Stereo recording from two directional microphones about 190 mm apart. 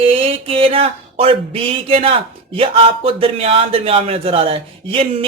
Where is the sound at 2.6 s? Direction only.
30° right (ahead or behind).